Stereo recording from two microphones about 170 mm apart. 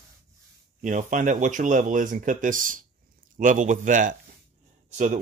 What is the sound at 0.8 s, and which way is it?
Speech, 50° right (ahead or behind).